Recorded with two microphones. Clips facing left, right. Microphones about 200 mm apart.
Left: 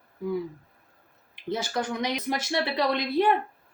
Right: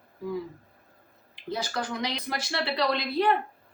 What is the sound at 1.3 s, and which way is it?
Speech, 20° left (ahead or behind).